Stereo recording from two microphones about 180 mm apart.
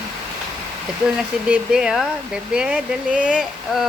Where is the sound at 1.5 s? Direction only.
5° right (ahead or behind).